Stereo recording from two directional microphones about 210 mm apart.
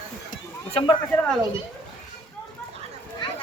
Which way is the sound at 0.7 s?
25° left (ahead or behind).